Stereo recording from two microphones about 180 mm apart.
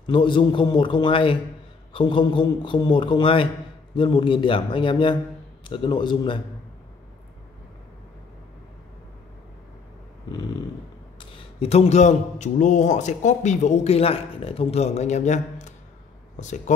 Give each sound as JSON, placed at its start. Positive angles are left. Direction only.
{"t": 0.0, "sound": "a man's voice", "side_deg": 25}
{"t": 11.1, "sound": "speech", "side_deg": 35}